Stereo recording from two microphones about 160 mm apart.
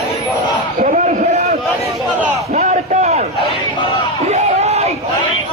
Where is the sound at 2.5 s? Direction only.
45° right (ahead or behind).